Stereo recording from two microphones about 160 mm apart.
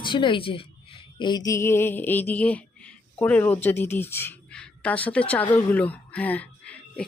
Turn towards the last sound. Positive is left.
turn(degrees=5)  # may be behind; listen again after turning